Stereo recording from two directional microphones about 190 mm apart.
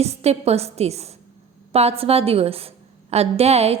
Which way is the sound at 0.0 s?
35° right (ahead or behind).